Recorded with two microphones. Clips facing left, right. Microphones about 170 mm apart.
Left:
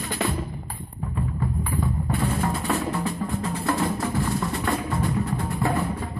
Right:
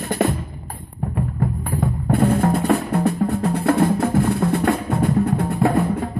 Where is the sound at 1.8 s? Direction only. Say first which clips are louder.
Right 10 dB; 60° right (ahead or behind).